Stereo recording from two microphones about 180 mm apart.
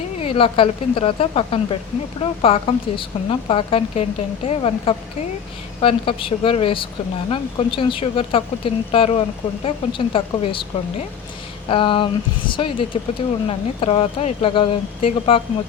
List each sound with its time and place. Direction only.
0.2 s speech: 30° left (ahead or behind)
11.7 s speech: 30° left (ahead or behind)